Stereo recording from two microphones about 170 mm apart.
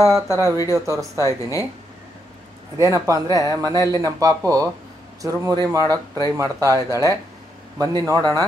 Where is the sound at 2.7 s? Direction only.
20° right (ahead or behind).